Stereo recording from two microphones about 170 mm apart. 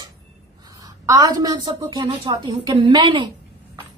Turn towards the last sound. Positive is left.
turn(degrees=-30)  # may be behind; listen again after turning